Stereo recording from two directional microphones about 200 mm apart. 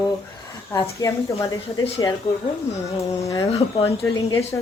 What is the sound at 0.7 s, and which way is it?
Speech, 15° left (ahead or behind).